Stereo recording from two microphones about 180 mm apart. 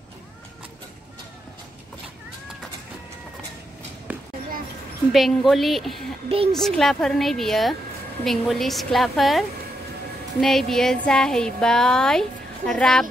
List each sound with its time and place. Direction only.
4.1 s basketball bounce: 10° right (ahead or behind)
5.1 s speech: centre (ahead or behind)
6.2 s a woman's voice: 30° right (ahead or behind)
6.5 s speech: centre (ahead or behind)